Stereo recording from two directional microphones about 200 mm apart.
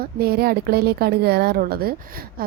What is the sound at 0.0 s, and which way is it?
A woman's voice, 50° right (ahead or behind).